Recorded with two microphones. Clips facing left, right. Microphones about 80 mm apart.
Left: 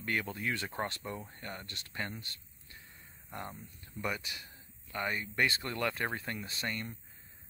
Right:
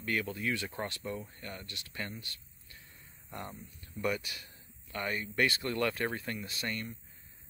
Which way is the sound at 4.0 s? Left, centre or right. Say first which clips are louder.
Right 3 dB; left.